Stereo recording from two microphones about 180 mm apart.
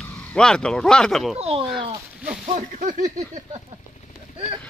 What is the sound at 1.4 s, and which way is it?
Speech, 30° right (ahead or behind).